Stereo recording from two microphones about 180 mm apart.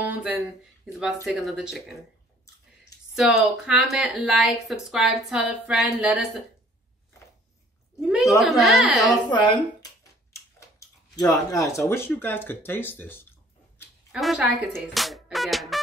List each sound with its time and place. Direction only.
0.0 s a sound: 10° right (ahead or behind)
1.2 s speech: centre (ahead or behind)
3.2 s speech: centre (ahead or behind)
8.4 s speech: centre (ahead or behind)
9.3 s speech: 25° left (ahead or behind)
11.1 s speech: 20° left (ahead or behind)
14.1 s speech: centre (ahead or behind)
15.0 s music: centre (ahead or behind)